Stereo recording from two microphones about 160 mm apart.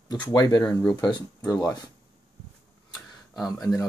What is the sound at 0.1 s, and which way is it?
Speech, 25° left (ahead or behind).